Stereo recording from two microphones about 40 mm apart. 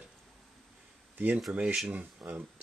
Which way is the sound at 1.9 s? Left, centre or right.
Right.